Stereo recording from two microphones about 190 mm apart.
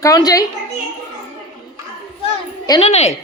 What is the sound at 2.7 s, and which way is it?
Speech, 30° left (ahead or behind).